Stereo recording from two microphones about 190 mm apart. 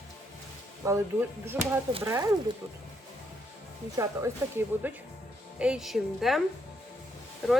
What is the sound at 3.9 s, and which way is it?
A woman's voice, 15° right (ahead or behind).